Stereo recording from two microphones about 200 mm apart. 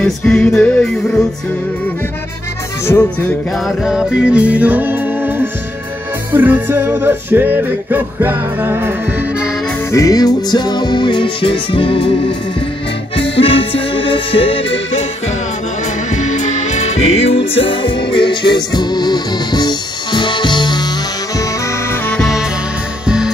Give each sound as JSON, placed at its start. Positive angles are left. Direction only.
{"t": 0.0, "sound": "music", "side_deg": 5}
{"t": 2.9, "sound": "music", "side_deg": 10}
{"t": 3.5, "sound": "music", "side_deg": 0}
{"t": 9.8, "sound": "music", "side_deg": 15}
{"t": 13.1, "sound": "accordion", "side_deg": 25}
{"t": 16.1, "sound": "music", "side_deg": 35}
{"t": 21.9, "sound": "music", "side_deg": 5}